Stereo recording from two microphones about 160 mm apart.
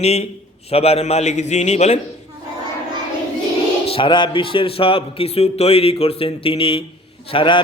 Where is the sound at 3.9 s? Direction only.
30° left (ahead or behind).